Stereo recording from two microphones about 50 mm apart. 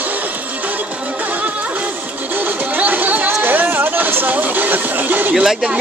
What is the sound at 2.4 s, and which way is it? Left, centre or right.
Music, right.